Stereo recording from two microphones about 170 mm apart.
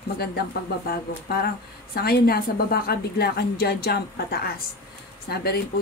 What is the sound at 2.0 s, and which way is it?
A woman's voice, 65° left (ahead or behind).